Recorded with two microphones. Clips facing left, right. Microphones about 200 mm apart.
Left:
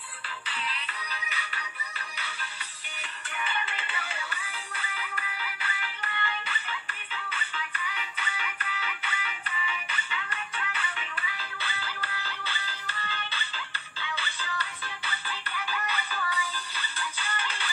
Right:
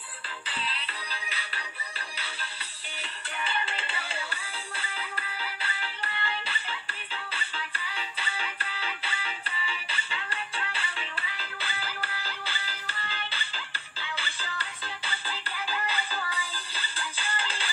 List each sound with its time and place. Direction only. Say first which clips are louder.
0.6 s music: right 1 dB; 30° right (ahead or behind)
3.0 s music: even; 30° right (ahead or behind)